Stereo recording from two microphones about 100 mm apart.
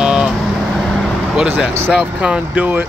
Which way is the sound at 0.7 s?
5° left (ahead or behind).